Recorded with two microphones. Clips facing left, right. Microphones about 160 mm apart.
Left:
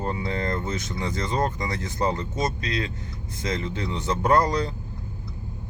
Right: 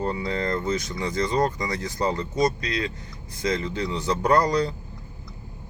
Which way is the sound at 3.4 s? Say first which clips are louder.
Right 3 dB; 25° left (ahead or behind).